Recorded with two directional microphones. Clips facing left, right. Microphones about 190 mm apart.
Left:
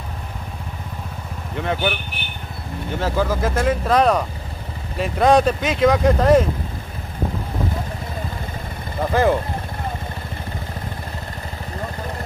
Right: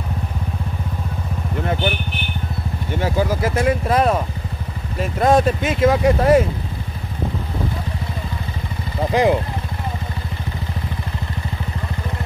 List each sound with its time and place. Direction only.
3.0 s speech: 10° right (ahead or behind)
9.1 s speech: 15° right (ahead or behind)